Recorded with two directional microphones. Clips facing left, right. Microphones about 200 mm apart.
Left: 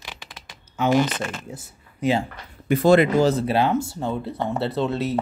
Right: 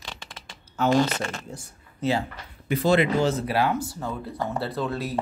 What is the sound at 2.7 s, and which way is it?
Speech, 50° left (ahead or behind).